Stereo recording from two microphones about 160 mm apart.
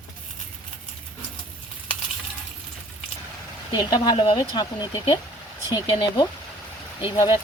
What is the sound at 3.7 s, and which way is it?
Speech, 25° left (ahead or behind).